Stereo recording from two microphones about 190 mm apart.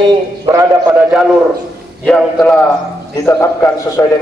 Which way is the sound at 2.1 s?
5° left (ahead or behind).